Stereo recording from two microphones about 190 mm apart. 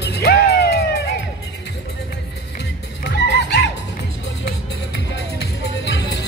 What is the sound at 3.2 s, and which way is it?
Music, 60° left (ahead or behind).